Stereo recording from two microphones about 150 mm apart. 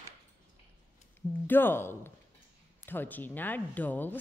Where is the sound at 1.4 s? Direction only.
15° left (ahead or behind).